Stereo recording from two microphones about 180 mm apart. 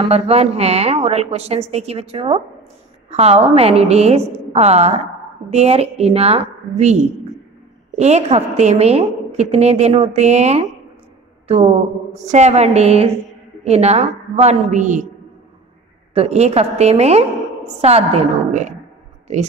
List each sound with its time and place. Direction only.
0.1 s a woman's voice: 35° right (ahead or behind)
8.0 s a woman's voice: 35° right (ahead or behind)
16.2 s a woman's voice: 35° right (ahead or behind)